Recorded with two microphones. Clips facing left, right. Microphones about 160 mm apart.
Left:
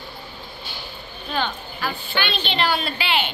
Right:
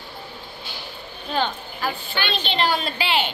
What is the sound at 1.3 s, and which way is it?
A woman's voice, 35° right (ahead or behind).